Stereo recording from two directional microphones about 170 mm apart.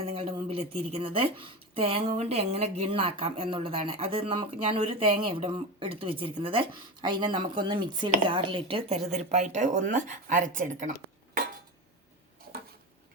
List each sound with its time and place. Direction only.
0.0 s speech: 35° right (ahead or behind)